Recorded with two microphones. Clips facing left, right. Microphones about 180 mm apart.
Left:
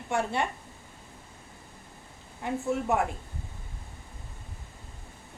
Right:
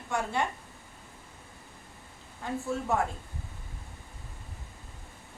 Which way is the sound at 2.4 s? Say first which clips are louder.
Left 3 dB; 20° left (ahead or behind).